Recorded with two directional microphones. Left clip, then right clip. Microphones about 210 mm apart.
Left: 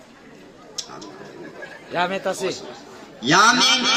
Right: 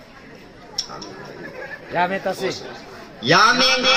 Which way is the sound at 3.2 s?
50° left (ahead or behind).